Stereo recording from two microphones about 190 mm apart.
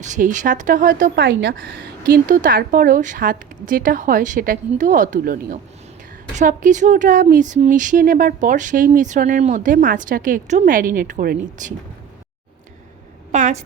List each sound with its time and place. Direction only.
0.0 s speech: 40° right (ahead or behind)
1.2 s speech: 70° right (ahead or behind); by 11.7 s 45° right (ahead or behind)
13.3 s a woman's voice: 40° right (ahead or behind)